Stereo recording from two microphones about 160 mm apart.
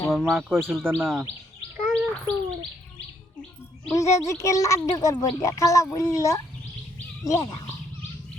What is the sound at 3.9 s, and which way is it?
Speech, 20° left (ahead or behind).